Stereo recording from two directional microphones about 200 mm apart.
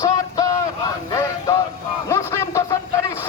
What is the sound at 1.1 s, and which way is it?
Music, 15° left (ahead or behind).